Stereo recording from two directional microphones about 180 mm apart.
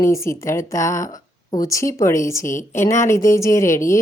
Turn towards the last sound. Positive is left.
turn(degrees=15)  # may be behind; listen again after turning